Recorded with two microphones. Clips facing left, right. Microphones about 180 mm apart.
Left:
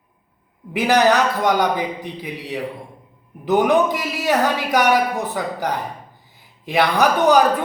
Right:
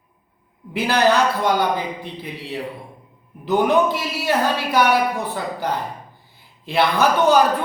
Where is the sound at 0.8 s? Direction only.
15° left (ahead or behind).